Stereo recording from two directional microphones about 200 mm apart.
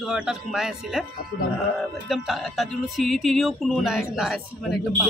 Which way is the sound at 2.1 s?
Centre (ahead or behind).